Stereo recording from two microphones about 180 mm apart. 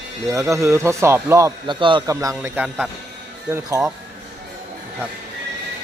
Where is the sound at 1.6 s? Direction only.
25° right (ahead or behind); by 2.8 s 10° right (ahead or behind).